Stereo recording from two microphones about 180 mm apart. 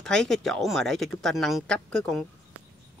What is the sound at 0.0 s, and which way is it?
Speech, 5° left (ahead or behind).